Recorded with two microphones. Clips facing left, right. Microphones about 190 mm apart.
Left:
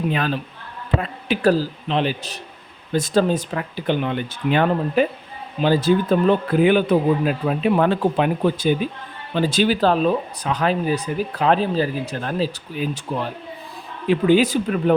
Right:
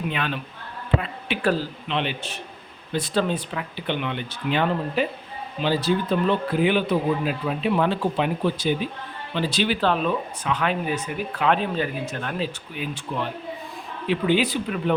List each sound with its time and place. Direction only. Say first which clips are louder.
0.1 s speech: left 5 dB; 40° left (ahead or behind)